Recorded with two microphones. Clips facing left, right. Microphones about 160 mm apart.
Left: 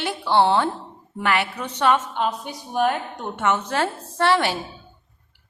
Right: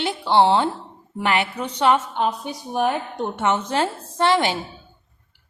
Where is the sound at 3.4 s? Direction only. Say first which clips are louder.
Even; 20° right (ahead or behind).